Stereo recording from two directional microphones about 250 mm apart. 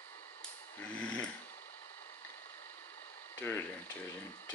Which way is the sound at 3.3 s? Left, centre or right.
Centre.